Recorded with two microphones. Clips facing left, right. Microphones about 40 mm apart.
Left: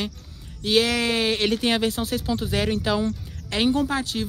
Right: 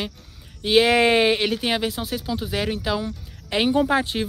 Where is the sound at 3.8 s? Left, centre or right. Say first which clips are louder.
Right 4 dB; right.